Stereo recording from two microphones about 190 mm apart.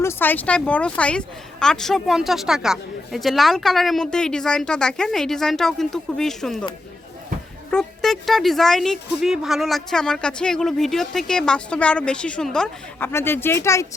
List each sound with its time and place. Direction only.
0.0 s speech: 10° left (ahead or behind)
7.7 s speech: 5° left (ahead or behind)